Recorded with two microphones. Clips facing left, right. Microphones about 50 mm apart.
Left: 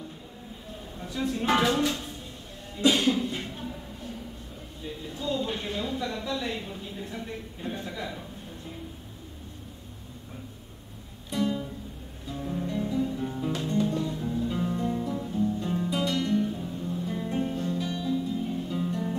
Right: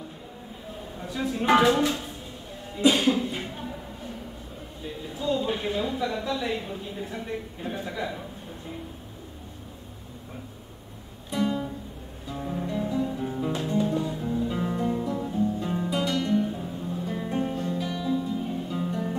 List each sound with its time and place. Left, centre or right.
0.9 s speech: centre
2.7 s a sound: centre
4.8 s speech: centre
11.2 s music: centre